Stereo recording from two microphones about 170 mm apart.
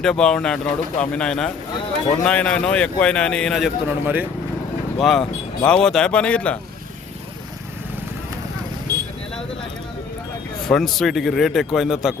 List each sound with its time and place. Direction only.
0.0 s speech: 5° left (ahead or behind)
4.0 s speech: 10° right (ahead or behind); by 6.6 s 5° left (ahead or behind)
8.9 s vehicle: 20° right (ahead or behind)
10.7 s speech: 5° left (ahead or behind)